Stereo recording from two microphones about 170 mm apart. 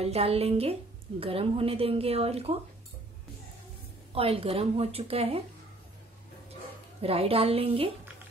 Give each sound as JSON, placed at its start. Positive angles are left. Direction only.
{"t": 0.0, "sound": "a woman's voice", "side_deg": -35}
{"t": 4.1, "sound": "a woman's voice", "side_deg": -35}
{"t": 7.0, "sound": "a woman's voice", "side_deg": -35}